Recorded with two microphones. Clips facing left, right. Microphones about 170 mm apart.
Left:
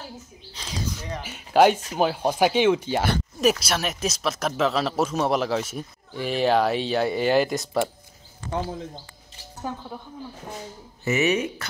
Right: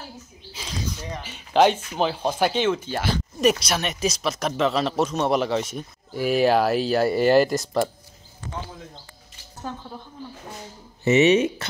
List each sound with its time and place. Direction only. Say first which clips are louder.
0.6 s a sound: right 2 dB; 5° right (ahead or behind)
1.2 s speech: left 1 dB; 5° left (ahead or behind)
6.1 s speech: right 2 dB; 5° right (ahead or behind)
11.1 s speech: right 6 dB; 25° right (ahead or behind)